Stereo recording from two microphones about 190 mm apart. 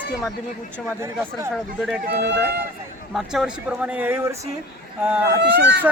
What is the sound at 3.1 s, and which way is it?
A man's voice, 5° right (ahead or behind).